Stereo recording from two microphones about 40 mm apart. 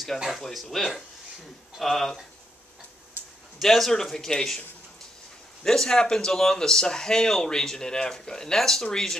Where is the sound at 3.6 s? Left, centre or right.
Centre.